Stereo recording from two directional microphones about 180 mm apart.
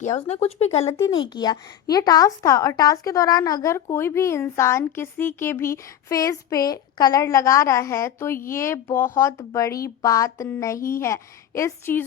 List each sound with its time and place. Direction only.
0.0 s speech: 40° left (ahead or behind)
0.9 s speech: 20° left (ahead or behind)